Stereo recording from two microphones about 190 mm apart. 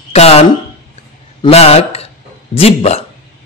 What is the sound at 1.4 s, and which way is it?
Speech, 30° left (ahead or behind).